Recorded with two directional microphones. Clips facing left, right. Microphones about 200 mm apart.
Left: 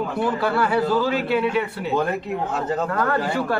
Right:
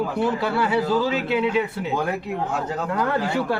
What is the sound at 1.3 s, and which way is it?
Speech, 20° right (ahead or behind).